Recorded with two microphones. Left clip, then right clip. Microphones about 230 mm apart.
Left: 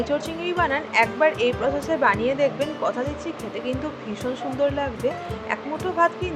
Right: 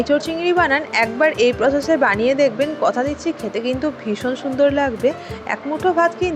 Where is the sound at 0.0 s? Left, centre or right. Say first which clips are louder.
Right 7 dB; right.